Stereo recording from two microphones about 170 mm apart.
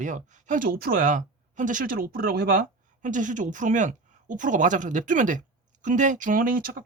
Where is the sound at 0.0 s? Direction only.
50° right (ahead or behind).